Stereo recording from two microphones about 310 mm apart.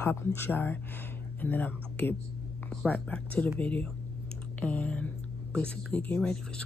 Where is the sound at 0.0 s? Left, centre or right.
Centre.